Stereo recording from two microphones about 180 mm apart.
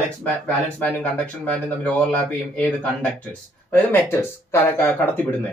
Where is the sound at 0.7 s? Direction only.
10° left (ahead or behind).